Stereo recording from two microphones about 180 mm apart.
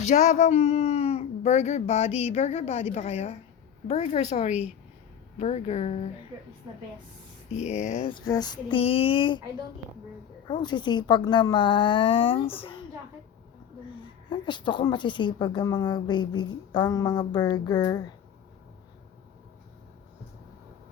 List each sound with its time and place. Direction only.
0.0 s speech: 40° left (ahead or behind)
7.5 s speech: 40° left (ahead or behind)
8.0 s a woman's voice: 25° left (ahead or behind)
10.5 s a woman's voice: 25° left (ahead or behind)
14.3 s a woman's voice: 25° left (ahead or behind)